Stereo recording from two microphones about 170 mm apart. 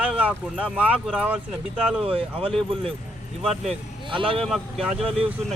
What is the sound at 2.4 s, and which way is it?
Speech, 5° left (ahead or behind).